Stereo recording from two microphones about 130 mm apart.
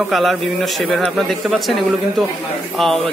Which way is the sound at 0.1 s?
Centre (ahead or behind).